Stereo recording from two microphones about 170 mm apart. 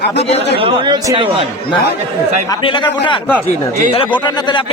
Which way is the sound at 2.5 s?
30° left (ahead or behind).